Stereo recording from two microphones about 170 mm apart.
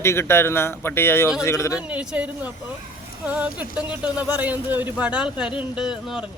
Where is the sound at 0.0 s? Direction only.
15° left (ahead or behind).